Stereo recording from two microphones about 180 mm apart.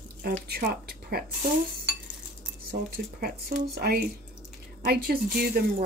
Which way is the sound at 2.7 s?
60° right (ahead or behind).